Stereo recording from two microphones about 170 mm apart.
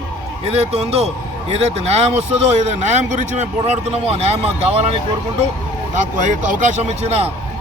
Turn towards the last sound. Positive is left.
turn(degrees=-35)  # may be behind; listen again after turning